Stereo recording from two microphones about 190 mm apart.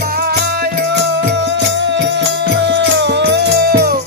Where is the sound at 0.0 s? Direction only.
55° right (ahead or behind).